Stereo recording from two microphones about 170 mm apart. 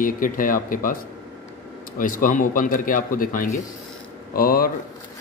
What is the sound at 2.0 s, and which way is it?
Speech, 55° left (ahead or behind).